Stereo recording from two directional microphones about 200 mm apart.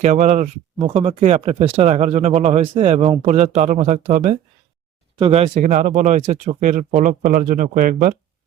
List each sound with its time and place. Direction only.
0.0 s speech: 35° right (ahead or behind)